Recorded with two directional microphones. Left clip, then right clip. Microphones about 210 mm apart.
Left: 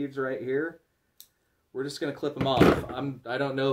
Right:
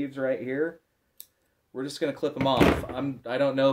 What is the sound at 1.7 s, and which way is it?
Speech, 20° right (ahead or behind).